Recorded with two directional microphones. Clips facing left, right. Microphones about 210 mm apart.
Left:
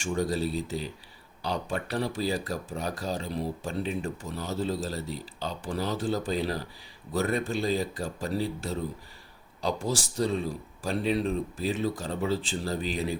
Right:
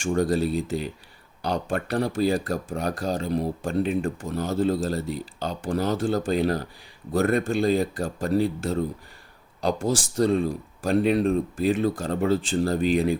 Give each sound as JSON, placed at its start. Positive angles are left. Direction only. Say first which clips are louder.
{"t": 0.0, "sound": "speech", "louder": "right 6 dB", "side_deg": -50}